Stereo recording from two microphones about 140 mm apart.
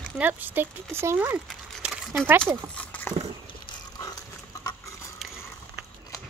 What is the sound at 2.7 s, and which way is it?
Horse, 10° left (ahead or behind).